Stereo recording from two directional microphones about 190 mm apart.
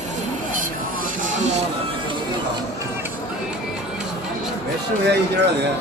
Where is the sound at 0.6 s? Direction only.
45° right (ahead or behind).